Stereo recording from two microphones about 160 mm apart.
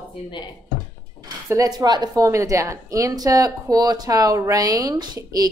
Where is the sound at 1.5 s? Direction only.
25° right (ahead or behind).